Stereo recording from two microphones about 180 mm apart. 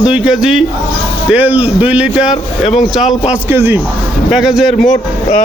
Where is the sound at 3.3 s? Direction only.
10° right (ahead or behind).